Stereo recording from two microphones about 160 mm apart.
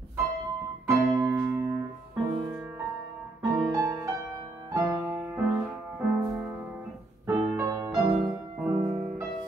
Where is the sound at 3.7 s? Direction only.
20° right (ahead or behind).